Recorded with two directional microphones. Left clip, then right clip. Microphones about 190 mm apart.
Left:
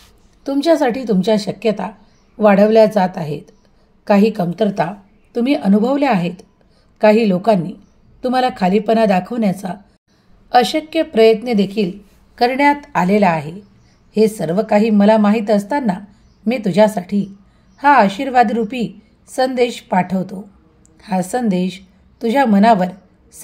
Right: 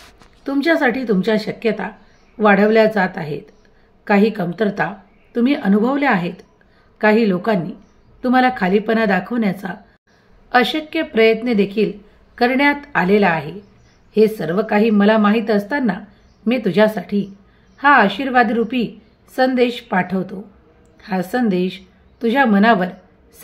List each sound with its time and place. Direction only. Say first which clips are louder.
0.4 s a woman's voice: left 2 dB; 35° left (ahead or behind)